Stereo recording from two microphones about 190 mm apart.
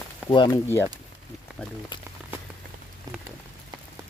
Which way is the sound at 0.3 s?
25° left (ahead or behind).